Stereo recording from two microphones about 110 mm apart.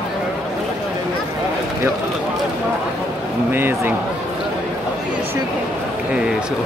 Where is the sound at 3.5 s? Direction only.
20° right (ahead or behind).